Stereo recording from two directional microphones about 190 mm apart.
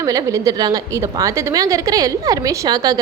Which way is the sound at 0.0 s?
20° right (ahead or behind).